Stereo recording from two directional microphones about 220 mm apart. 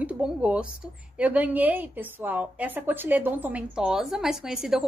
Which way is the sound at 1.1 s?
5° right (ahead or behind).